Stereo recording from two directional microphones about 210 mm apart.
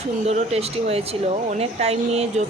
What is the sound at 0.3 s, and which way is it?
Speech, 30° right (ahead or behind).